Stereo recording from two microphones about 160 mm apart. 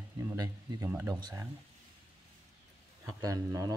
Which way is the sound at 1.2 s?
25° right (ahead or behind).